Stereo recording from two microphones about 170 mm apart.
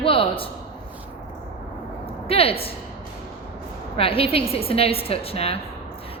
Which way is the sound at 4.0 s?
35° left (ahead or behind).